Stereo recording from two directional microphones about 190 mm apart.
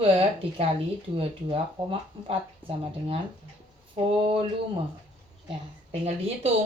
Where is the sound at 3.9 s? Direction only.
30° right (ahead or behind).